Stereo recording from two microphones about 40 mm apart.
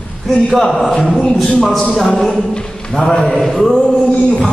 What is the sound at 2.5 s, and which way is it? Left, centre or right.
A man's voice, left.